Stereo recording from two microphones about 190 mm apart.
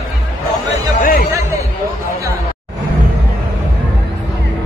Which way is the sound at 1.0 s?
45° left (ahead or behind).